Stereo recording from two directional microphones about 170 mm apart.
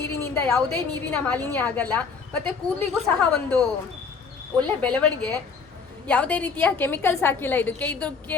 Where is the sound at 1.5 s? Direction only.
10° left (ahead or behind).